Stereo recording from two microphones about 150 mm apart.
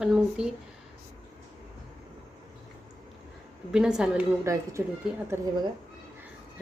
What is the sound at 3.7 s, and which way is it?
Speech, 5° right (ahead or behind).